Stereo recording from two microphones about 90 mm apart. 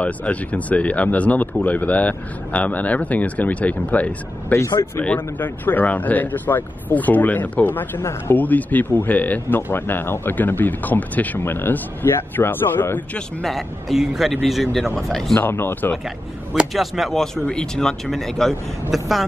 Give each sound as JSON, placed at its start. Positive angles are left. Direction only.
{"t": 0.0, "sound": "speech", "side_deg": 15}
{"t": 13.4, "sound": "speech", "side_deg": 0}
{"t": 15.3, "sound": "speech", "side_deg": 25}
{"t": 16.5, "sound": "speech", "side_deg": -5}